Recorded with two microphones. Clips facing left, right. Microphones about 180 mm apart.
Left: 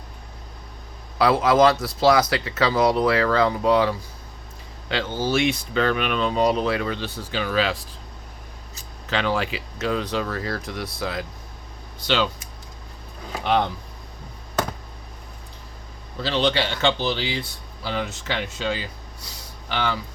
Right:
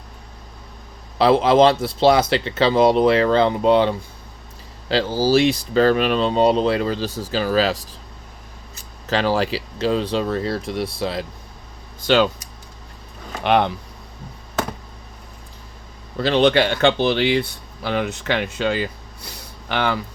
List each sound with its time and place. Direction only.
1.2 s speech: 25° right (ahead or behind)
9.0 s speech: 40° right (ahead or behind)
12.0 s speech: 50° right (ahead or behind)
13.4 s speech: 70° right (ahead or behind)
16.2 s speech: 55° right (ahead or behind)